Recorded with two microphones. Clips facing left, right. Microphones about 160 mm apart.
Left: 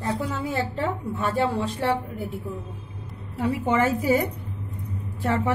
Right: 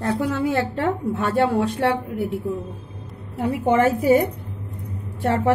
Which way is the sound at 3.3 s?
60° right (ahead or behind).